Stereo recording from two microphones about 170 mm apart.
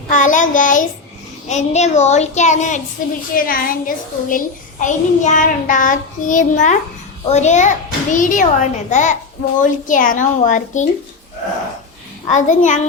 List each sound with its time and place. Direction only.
0.1 s a child's voice: 50° left (ahead or behind)
3.3 s a child's voice: 55° left (ahead or behind)
12.3 s a child's voice: 45° left (ahead or behind)